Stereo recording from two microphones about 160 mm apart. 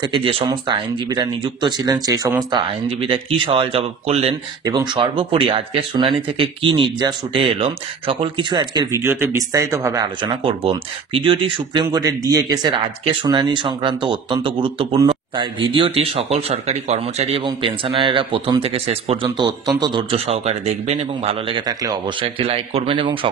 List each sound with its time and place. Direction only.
0.0 s speech: 35° right (ahead or behind)
4.6 s speech: 25° right (ahead or behind)
9.0 s speech: 15° right (ahead or behind)
10.2 s speech: 30° right (ahead or behind)
17.5 s speech: 30° right (ahead or behind)
21.5 s speech: 25° right (ahead or behind)